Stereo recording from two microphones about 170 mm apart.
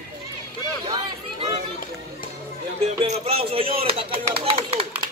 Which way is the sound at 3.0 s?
35° right (ahead or behind).